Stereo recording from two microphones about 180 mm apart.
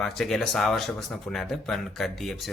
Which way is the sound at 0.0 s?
Centre (ahead or behind).